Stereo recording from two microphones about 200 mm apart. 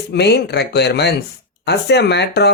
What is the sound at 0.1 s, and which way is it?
Speech, 55° left (ahead or behind).